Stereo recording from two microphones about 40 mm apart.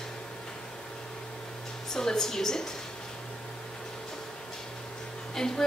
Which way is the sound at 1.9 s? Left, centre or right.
Centre.